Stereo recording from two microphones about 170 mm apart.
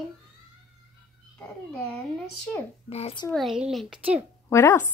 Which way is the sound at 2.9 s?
35° left (ahead or behind).